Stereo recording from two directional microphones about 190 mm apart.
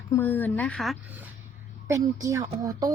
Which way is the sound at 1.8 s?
15° right (ahead or behind).